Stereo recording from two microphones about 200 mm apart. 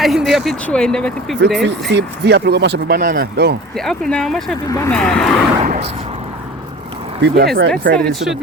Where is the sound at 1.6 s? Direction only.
60° right (ahead or behind).